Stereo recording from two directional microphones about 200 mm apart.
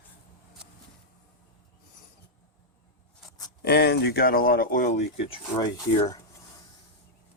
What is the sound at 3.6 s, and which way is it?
Speech, 55° left (ahead or behind).